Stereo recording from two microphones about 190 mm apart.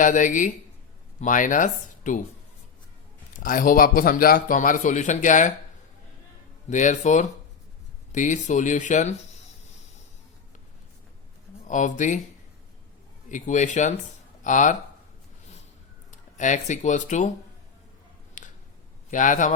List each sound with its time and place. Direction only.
0.0 s a man's voice: 45° left (ahead or behind)
3.3 s a man's voice: 45° left (ahead or behind)
6.7 s speech: 40° left (ahead or behind)
11.7 s speech: 40° left (ahead or behind)
13.2 s speech: 40° left (ahead or behind)
16.1 s speech: 40° left (ahead or behind)
18.4 s a sound: 40° left (ahead or behind)
19.1 s a man's voice: 40° left (ahead or behind)